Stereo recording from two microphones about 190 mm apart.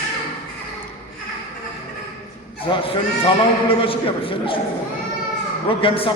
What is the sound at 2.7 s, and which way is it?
A man's voice, 25° left (ahead or behind).